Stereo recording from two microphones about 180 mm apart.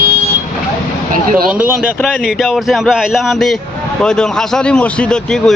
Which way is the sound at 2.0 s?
Centre (ahead or behind).